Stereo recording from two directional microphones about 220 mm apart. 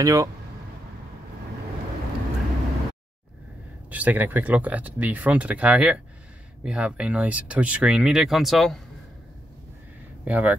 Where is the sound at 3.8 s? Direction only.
5° right (ahead or behind).